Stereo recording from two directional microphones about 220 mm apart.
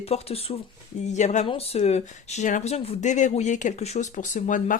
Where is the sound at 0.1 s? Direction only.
25° left (ahead or behind).